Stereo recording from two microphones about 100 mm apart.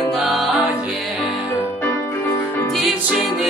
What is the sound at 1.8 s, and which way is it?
Music, 20° left (ahead or behind).